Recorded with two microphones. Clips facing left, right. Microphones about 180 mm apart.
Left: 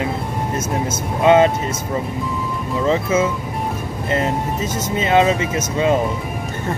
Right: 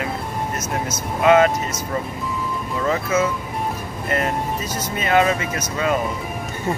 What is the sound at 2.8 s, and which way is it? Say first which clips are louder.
Speech: left 3 dB; 25° left (ahead or behind).